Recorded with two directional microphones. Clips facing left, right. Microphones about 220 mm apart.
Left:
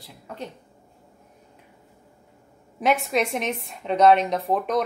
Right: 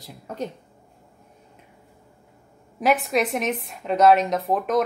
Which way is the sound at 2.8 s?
Centre (ahead or behind).